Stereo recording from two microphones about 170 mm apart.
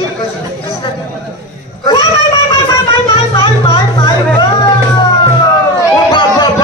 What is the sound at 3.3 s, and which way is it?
Music, 25° left (ahead or behind).